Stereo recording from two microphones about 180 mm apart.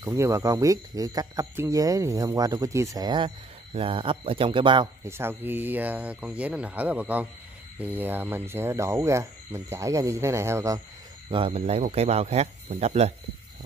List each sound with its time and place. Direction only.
0.0 s speech: 15° right (ahead or behind)
5.0 s speech: 15° right (ahead or behind)
11.2 s speech: 30° right (ahead or behind)